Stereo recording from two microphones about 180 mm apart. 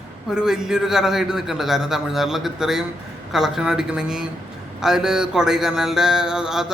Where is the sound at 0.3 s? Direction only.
5° right (ahead or behind).